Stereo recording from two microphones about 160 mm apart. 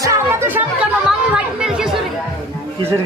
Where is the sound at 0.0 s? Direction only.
20° right (ahead or behind).